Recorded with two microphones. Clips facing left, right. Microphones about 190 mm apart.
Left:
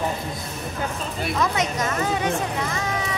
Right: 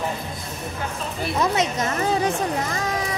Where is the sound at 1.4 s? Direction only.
30° right (ahead or behind).